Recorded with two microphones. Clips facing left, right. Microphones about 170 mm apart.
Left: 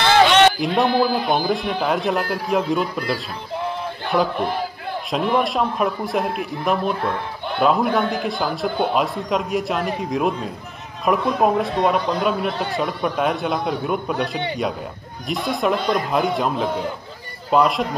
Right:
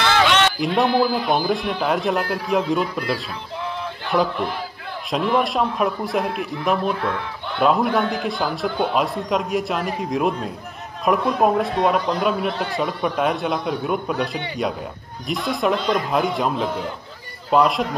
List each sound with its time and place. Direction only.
0.0 s a sound: 30° left (ahead or behind)
0.6 s a man's voice: centre (ahead or behind)
7.0 s speech: 30° left (ahead or behind)
7.6 s a man's voice: centre (ahead or behind)